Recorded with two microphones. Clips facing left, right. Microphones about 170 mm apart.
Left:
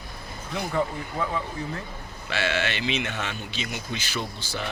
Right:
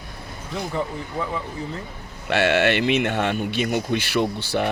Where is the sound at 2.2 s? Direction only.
65° right (ahead or behind).